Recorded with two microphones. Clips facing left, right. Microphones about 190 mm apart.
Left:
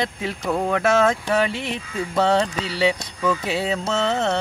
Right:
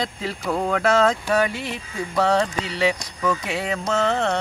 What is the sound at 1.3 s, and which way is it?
Music, 20° left (ahead or behind).